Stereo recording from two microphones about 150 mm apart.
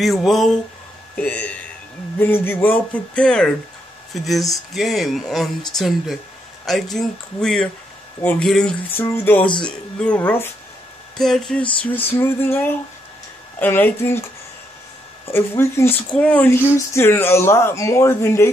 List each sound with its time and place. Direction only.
0.0 s speech: centre (ahead or behind)
8.9 s speech: 15° left (ahead or behind)
15.2 s speech: 15° left (ahead or behind)